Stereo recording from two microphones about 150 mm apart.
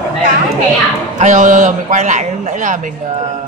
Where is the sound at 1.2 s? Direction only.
55° right (ahead or behind).